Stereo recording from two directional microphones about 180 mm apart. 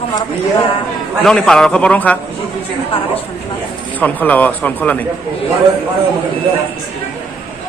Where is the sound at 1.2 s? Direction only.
5° left (ahead or behind).